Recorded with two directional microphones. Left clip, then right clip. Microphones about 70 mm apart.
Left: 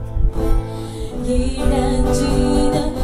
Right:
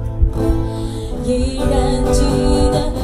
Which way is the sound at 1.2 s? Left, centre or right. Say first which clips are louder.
Right 2 dB; right.